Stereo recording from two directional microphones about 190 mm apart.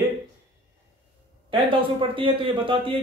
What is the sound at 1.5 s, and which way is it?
A man's voice, 30° right (ahead or behind).